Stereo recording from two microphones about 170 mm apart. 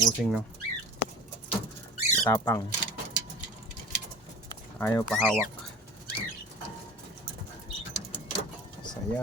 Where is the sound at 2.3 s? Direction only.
15° left (ahead or behind).